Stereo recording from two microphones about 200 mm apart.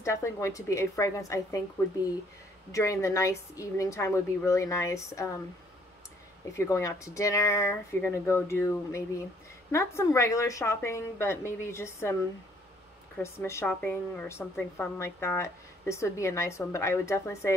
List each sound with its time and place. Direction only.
0.0 s a woman's voice: 15° left (ahead or behind)
2.7 s a woman's voice: 15° left (ahead or behind)
6.5 s a woman's voice: 15° left (ahead or behind)
13.2 s a woman's voice: 15° left (ahead or behind)